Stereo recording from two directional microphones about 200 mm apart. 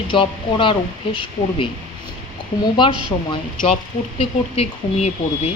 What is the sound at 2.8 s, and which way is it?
Speech, 25° left (ahead or behind).